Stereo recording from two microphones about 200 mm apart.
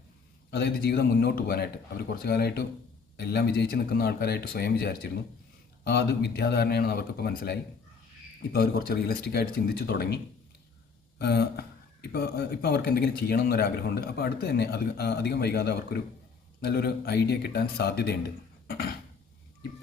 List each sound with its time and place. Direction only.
0.5 s a man's voice: 55° left (ahead or behind)
11.2 s a man's voice: 55° left (ahead or behind)